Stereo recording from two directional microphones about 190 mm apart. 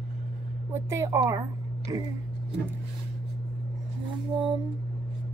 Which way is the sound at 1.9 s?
20° right (ahead or behind).